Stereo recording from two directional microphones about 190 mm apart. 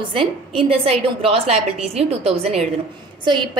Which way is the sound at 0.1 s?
30° right (ahead or behind).